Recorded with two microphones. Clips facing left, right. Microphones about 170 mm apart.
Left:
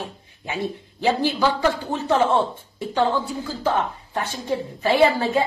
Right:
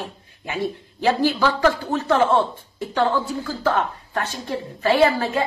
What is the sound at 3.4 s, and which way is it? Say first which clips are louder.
A woman's voice: even; 15° left (ahead or behind).